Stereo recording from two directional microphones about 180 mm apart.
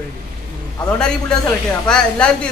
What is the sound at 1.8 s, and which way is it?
Speech, 5° left (ahead or behind).